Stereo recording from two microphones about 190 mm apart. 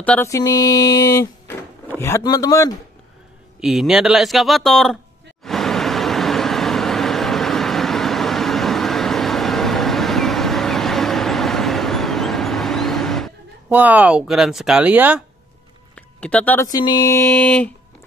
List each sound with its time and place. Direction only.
0.0 s speech: 10° left (ahead or behind)
3.6 s speech: centre (ahead or behind)
5.4 s vehicle: centre (ahead or behind)
13.7 s speech: 10° right (ahead or behind)
15.9 s a sound: 5° left (ahead or behind)
16.7 s speech: 20° left (ahead or behind)